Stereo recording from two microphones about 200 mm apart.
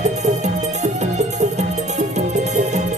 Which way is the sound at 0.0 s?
35° right (ahead or behind).